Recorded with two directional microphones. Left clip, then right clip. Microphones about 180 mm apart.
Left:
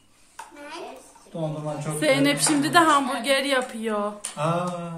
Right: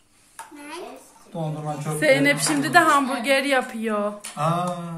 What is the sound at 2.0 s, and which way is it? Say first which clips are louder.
A woman's voice: right 3 dB; 5° right (ahead or behind).